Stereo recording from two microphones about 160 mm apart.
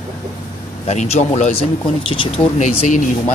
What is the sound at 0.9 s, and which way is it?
Speech, 45° left (ahead or behind).